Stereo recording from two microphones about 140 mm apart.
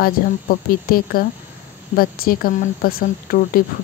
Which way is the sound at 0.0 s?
90° left.